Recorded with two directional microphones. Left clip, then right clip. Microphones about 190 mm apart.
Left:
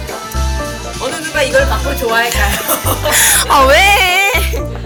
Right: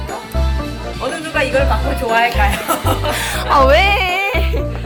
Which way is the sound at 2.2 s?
Centre (ahead or behind).